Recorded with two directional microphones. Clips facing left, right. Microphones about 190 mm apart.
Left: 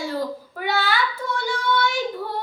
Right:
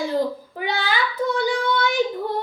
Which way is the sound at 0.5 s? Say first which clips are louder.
Left 3 dB; 20° right (ahead or behind).